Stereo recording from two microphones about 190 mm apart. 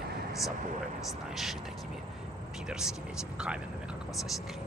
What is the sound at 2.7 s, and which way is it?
Speech, 5° right (ahead or behind).